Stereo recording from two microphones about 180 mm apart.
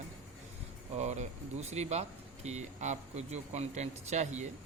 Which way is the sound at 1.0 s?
40° right (ahead or behind).